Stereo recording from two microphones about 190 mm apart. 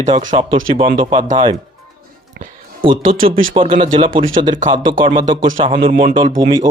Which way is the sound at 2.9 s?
45° right (ahead or behind).